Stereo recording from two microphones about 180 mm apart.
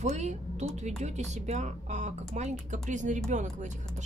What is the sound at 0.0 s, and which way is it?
A woman's voice, 40° right (ahead or behind).